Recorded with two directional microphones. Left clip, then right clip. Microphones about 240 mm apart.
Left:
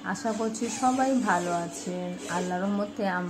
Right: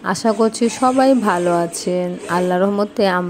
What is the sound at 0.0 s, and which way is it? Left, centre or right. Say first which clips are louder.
A woman's voice: right 13 dB; right.